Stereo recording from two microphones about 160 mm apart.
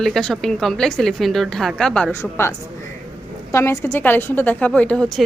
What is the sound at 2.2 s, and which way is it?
Speech, 15° left (ahead or behind).